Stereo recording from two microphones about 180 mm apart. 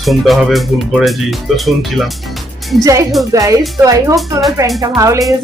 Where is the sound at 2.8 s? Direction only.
15° right (ahead or behind).